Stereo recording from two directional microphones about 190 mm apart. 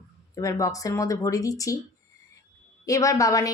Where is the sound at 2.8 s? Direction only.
15° left (ahead or behind).